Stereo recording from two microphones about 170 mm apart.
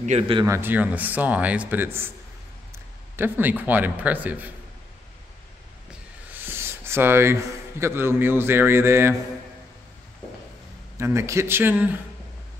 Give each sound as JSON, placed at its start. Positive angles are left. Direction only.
{"t": 0.0, "sound": "speech", "side_deg": -40}
{"t": 0.4, "sound": "a man's voice", "side_deg": -15}
{"t": 3.2, "sound": "a man's voice", "side_deg": -10}
{"t": 6.4, "sound": "a sound", "side_deg": -15}
{"t": 7.8, "sound": "a man's voice", "side_deg": -15}
{"t": 11.0, "sound": "a man's voice", "side_deg": -15}